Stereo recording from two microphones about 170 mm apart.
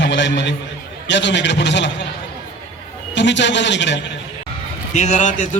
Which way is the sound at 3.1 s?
90° left.